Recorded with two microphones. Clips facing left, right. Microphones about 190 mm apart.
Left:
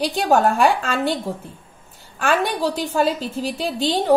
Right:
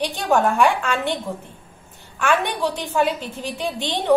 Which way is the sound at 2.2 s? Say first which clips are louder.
Left 1 dB; 35° left (ahead or behind).